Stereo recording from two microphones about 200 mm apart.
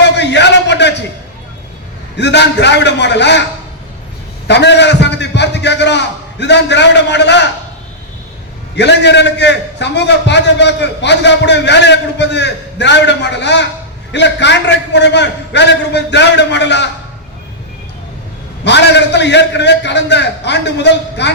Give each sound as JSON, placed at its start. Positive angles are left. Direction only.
{"t": 0.0, "sound": "a sound", "side_deg": 60}
{"t": 2.1, "sound": "a man's voice", "side_deg": 60}
{"t": 4.4, "sound": "a man's voice", "side_deg": 60}
{"t": 8.7, "sound": "a man's voice", "side_deg": 60}
{"t": 18.6, "sound": "a man's voice", "side_deg": 60}